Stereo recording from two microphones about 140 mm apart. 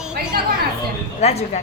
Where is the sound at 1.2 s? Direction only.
50° left (ahead or behind).